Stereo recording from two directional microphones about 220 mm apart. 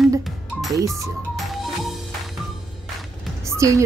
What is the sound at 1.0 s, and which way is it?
Music, centre (ahead or behind).